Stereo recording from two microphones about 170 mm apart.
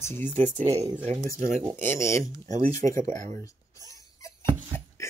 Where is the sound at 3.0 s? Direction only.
45° right (ahead or behind).